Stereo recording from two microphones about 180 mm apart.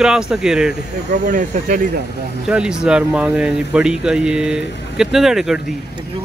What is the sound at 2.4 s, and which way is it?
Speech, 5° right (ahead or behind).